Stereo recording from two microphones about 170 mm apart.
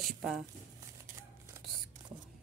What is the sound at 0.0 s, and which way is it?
Speech, centre (ahead or behind).